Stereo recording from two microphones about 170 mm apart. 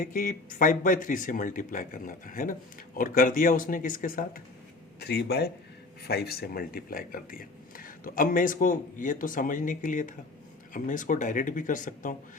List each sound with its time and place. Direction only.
0.0 s speech: 55° left (ahead or behind)
4.9 s speech: 70° left (ahead or behind); by 12.1 s 50° left (ahead or behind)